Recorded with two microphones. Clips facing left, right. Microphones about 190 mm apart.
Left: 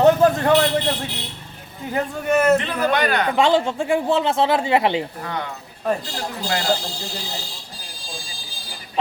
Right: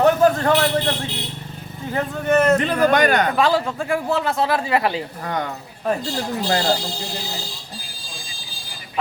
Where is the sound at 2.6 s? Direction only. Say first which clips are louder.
Right 4 dB; 45° right (ahead or behind).